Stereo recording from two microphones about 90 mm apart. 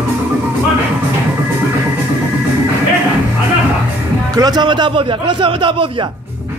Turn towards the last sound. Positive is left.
turn(degrees=-75)  # may be behind; listen again after turning